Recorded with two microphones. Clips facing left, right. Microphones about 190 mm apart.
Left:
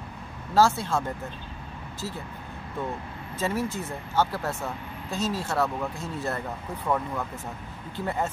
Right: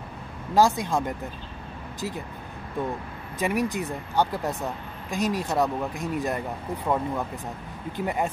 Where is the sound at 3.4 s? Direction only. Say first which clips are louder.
Right 3 dB; 15° right (ahead or behind).